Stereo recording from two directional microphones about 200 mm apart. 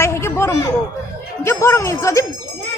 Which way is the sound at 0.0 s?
15° left (ahead or behind).